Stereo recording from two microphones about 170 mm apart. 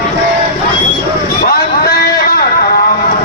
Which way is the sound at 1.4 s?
65° left (ahead or behind).